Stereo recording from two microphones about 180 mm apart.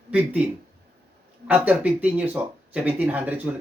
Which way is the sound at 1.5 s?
10° right (ahead or behind).